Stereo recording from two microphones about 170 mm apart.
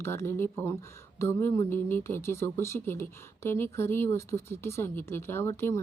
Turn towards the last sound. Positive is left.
turn(degrees=15)  # may be behind; listen again after turning